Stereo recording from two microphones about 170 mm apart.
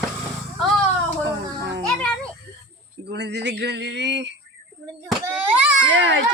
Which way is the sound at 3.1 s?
85° right.